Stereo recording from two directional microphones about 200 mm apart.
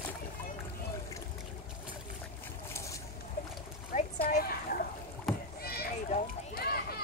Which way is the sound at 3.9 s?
45° left (ahead or behind).